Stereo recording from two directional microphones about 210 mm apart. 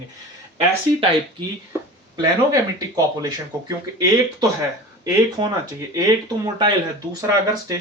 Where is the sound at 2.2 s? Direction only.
15° right (ahead or behind).